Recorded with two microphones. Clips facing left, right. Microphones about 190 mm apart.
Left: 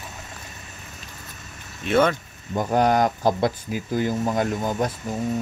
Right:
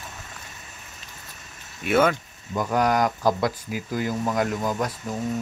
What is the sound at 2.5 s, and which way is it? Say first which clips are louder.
Speech: left 2 dB; 25° left (ahead or behind).